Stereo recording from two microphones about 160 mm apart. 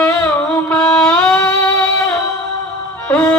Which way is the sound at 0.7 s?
5° left (ahead or behind).